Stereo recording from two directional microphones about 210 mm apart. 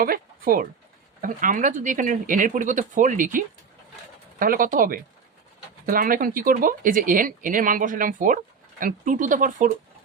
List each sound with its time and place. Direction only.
0.0 s speech: 45° right (ahead or behind)